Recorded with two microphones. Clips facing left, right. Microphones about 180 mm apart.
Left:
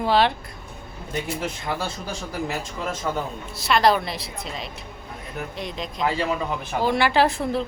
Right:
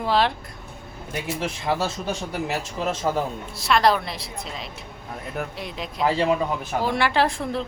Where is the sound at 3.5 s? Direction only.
Centre (ahead or behind).